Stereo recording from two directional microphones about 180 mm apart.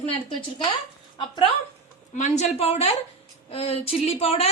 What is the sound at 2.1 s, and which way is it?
Speech, 40° left (ahead or behind).